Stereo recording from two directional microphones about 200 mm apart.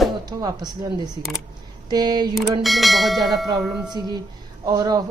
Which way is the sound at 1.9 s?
20° right (ahead or behind).